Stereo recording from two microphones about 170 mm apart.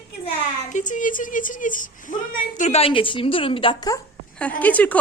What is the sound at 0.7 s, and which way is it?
A woman's voice, 50° left (ahead or behind).